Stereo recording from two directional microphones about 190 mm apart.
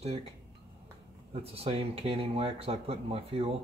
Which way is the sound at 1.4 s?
30° right (ahead or behind).